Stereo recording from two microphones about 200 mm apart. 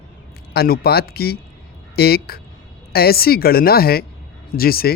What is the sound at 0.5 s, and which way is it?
Speech, 50° left (ahead or behind).